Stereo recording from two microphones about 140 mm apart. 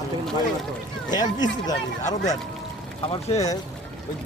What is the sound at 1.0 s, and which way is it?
Speech, 30° left (ahead or behind).